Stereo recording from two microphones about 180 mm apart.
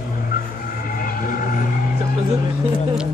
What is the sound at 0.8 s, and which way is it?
Vehicle, 50° left (ahead or behind).